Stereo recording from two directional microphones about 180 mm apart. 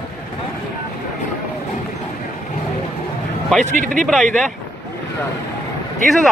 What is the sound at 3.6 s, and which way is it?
Speech, 45° right (ahead or behind).